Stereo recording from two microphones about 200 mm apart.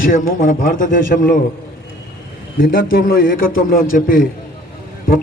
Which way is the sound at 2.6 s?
45° left (ahead or behind).